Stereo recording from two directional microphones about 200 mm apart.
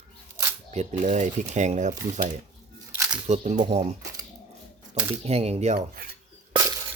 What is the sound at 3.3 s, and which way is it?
Speech, 35° right (ahead or behind).